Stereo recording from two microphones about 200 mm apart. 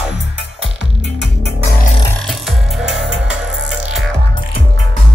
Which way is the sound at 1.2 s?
50° left (ahead or behind).